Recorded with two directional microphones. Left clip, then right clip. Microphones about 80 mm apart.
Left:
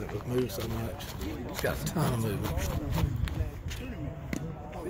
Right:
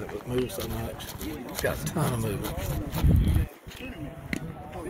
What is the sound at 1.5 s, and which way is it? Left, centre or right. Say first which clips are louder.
Speech: right 3 dB; left.